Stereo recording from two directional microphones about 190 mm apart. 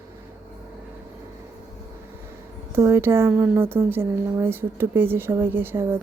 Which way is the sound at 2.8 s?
15° right (ahead or behind).